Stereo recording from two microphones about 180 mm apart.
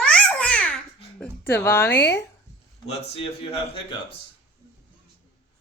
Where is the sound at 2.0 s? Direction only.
70° left (ahead or behind).